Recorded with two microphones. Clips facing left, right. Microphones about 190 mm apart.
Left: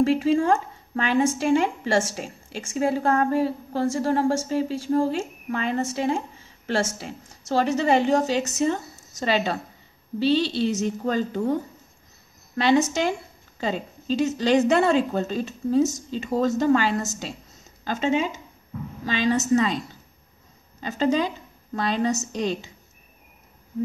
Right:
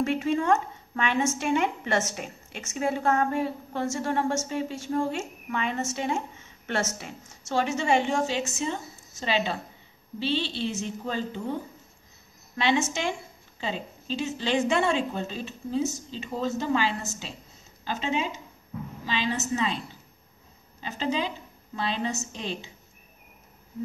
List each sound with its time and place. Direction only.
0.0 s a woman's voice: 35° left (ahead or behind)
20.8 s a woman's voice: 45° left (ahead or behind)